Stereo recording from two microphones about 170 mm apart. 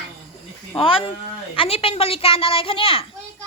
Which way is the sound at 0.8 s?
30° left (ahead or behind).